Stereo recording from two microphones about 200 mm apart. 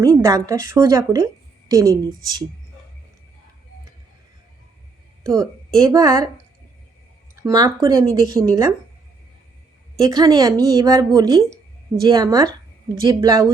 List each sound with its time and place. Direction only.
0.0 s a woman's voice: 15° right (ahead or behind)
5.2 s a woman's voice: 15° right (ahead or behind)
7.4 s speech: 20° right (ahead or behind)
10.0 s a woman's voice: 20° right (ahead or behind)